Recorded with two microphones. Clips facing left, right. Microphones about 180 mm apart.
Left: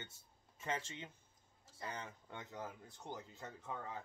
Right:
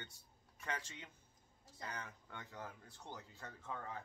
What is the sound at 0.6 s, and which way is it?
Speech, 25° left (ahead or behind).